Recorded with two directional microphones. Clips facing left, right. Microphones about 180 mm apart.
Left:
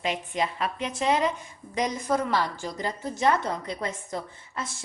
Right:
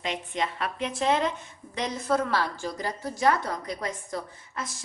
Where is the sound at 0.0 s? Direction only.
5° left (ahead or behind).